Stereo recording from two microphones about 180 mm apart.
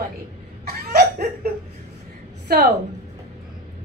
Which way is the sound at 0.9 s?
60° right (ahead or behind).